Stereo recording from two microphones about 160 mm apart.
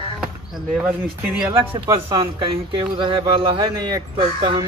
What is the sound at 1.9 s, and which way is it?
Speech, 30° right (ahead or behind).